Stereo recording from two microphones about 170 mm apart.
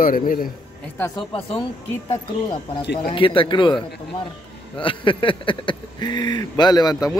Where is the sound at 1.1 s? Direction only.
30° left (ahead or behind).